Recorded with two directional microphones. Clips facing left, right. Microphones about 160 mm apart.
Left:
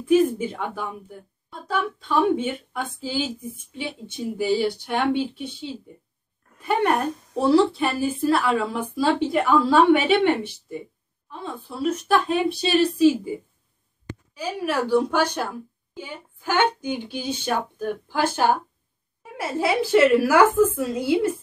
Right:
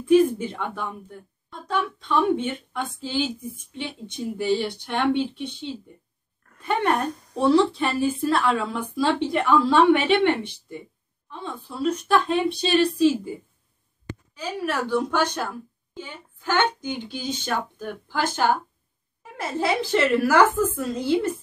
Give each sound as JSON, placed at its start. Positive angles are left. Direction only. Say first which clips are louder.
{"t": 0.1, "sound": "a woman's voice", "louder": "right 1 dB", "side_deg": 5}
{"t": 14.3, "sound": "a woman's voice", "louder": "left 2 dB", "side_deg": 10}